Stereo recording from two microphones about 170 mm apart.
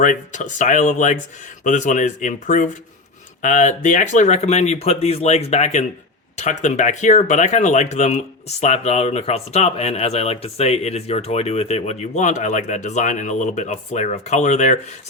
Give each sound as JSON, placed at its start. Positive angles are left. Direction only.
{"t": 0.0, "sound": "speech", "side_deg": 50}